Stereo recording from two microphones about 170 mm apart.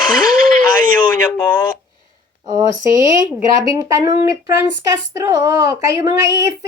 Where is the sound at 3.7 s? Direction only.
20° right (ahead or behind).